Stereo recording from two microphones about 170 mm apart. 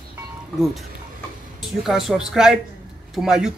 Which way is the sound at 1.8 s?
Centre (ahead or behind).